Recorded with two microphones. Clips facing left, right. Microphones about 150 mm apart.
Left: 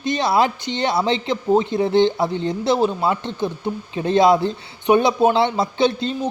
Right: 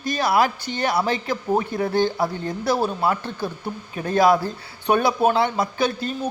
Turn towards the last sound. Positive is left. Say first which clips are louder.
# left 4 dB
turn(degrees=25)  # may be behind; listen again after turning